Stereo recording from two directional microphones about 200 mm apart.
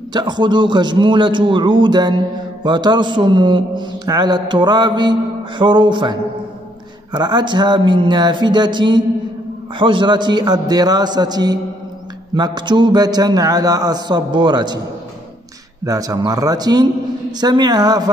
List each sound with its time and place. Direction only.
0.1 s a man's voice: 20° right (ahead or behind)
15.8 s a man's voice: 15° right (ahead or behind)